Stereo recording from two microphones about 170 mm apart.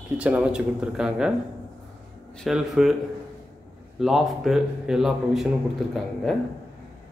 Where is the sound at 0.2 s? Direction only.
5° right (ahead or behind).